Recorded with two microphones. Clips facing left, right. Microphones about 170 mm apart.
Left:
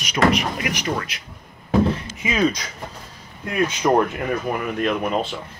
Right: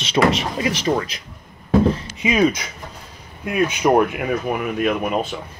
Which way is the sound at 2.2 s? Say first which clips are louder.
Right 3 dB; 15° right (ahead or behind).